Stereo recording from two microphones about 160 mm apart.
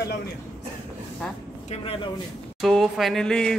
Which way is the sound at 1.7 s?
35° left (ahead or behind).